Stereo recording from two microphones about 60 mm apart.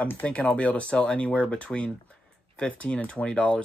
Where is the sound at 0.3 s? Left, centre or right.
Centre.